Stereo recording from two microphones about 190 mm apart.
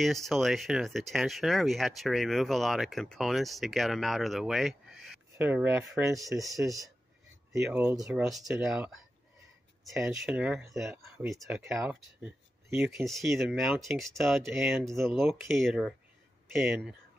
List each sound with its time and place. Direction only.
0.0 s speech: centre (ahead or behind)
6.6 s speech: 20° right (ahead or behind)
8.1 s speech: centre (ahead or behind)
9.9 s speech: 5° right (ahead or behind)